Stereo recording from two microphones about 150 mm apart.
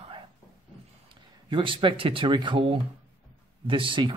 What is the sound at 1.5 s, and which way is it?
A man's voice, 35° right (ahead or behind).